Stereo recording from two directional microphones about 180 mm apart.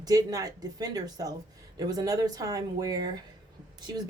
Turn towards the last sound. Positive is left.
turn(degrees=-25)  # may be behind; listen again after turning